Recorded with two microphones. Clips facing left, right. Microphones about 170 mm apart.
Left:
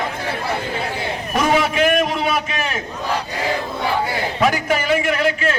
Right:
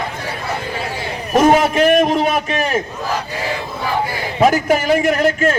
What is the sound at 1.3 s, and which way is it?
A man's voice, 45° right (ahead or behind).